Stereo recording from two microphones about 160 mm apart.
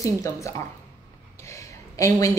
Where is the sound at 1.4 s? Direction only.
20° left (ahead or behind).